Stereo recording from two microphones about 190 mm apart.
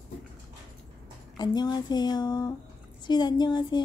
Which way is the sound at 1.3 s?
20° left (ahead or behind).